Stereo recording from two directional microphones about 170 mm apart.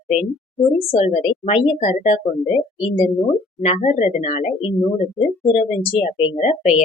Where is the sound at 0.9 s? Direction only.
40° left (ahead or behind).